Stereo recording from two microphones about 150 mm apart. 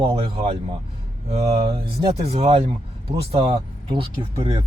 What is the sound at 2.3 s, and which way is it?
Speech, 40° right (ahead or behind).